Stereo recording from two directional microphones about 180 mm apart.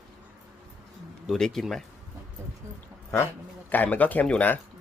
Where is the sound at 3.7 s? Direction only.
10° left (ahead or behind).